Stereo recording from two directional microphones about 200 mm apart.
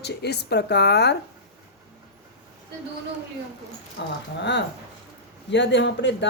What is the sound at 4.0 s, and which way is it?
Speech, 60° left (ahead or behind).